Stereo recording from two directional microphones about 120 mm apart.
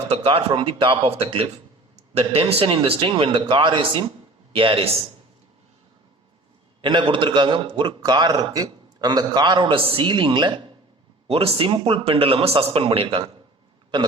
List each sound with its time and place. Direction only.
0.1 s a man's voice: 50° right (ahead or behind)
6.8 s a man's voice: 40° right (ahead or behind)
11.3 s a man's voice: 55° right (ahead or behind)